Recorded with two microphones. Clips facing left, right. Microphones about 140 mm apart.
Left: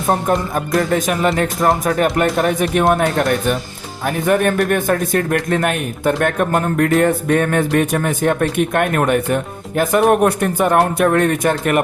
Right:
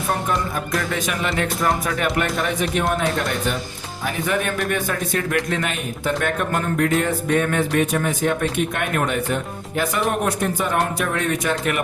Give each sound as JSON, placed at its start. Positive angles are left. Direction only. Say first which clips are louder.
{"t": 0.1, "sound": "speech", "louder": "left 7 dB", "side_deg": 45}